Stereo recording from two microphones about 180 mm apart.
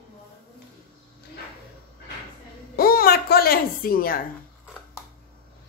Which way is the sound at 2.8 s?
55° left (ahead or behind).